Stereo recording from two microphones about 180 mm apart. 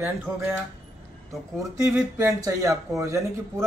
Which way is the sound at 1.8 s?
15° right (ahead or behind).